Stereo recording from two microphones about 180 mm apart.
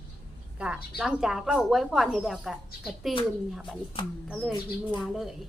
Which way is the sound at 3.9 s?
30° left (ahead or behind).